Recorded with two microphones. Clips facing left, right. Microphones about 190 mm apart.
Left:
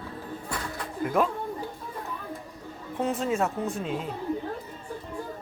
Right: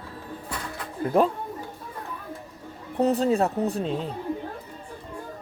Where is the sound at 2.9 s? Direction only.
35° right (ahead or behind).